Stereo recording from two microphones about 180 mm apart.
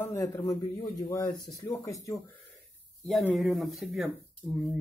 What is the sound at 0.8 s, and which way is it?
Speech, 20° left (ahead or behind).